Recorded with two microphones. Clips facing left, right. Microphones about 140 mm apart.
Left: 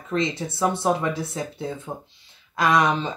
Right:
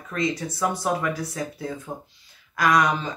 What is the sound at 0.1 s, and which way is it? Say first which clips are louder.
Speech: left 1 dB; 25° left (ahead or behind).